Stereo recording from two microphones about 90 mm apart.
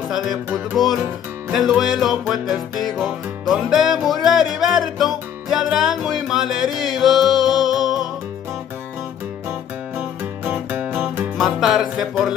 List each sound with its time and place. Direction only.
0.1 s music: 5° right (ahead or behind)
1.5 s music: 5° right (ahead or behind)
9.9 s music: 10° right (ahead or behind)
11.3 s music: centre (ahead or behind)